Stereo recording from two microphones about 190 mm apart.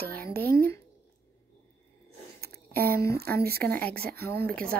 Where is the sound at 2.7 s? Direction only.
15° left (ahead or behind).